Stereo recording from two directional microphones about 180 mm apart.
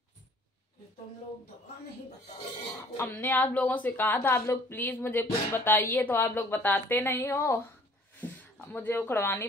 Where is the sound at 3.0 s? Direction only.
10° left (ahead or behind).